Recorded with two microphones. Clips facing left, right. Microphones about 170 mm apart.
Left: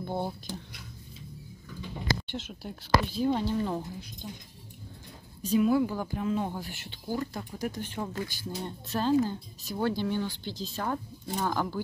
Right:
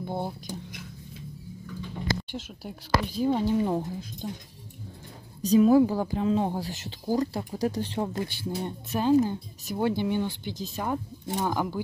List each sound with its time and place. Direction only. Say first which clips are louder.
0.0 s speech: right 1 dB; 10° right (ahead or behind)
2.3 s speech: right 1 dB; 10° right (ahead or behind)
3.4 s speech: right 5 dB; 15° right (ahead or behind)
4.2 s speech: right 7 dB; 60° right (ahead or behind)
5.4 s speech: right 6 dB; 40° right (ahead or behind)
8.6 s speech: right 3 dB; 20° right (ahead or behind)